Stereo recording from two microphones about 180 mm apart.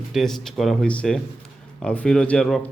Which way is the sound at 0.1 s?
Centre (ahead or behind).